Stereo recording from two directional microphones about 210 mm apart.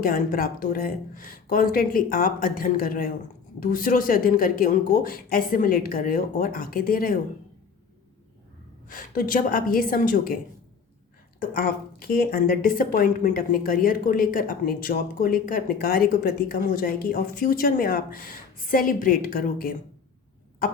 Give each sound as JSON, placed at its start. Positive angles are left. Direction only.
{"t": 0.0, "sound": "speech", "side_deg": 40}
{"t": 8.9, "sound": "speech", "side_deg": 40}
{"t": 11.3, "sound": "speech", "side_deg": 45}